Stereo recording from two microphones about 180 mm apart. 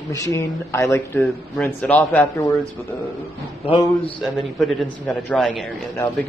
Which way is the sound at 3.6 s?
30° left (ahead or behind).